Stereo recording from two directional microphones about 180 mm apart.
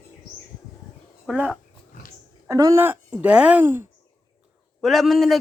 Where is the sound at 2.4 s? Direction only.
15° right (ahead or behind).